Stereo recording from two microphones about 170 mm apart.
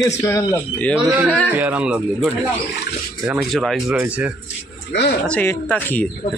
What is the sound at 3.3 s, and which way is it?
Speech, centre (ahead or behind).